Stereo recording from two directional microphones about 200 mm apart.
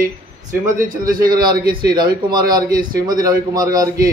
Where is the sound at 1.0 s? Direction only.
20° right (ahead or behind).